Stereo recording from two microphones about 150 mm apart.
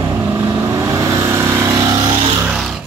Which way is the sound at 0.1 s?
20° right (ahead or behind).